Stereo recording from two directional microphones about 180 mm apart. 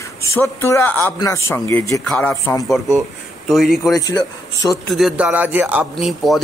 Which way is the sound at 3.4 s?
Centre (ahead or behind).